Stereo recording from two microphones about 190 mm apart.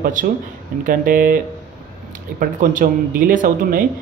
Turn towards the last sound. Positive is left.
turn(degrees=-45)  # may be behind; listen again after turning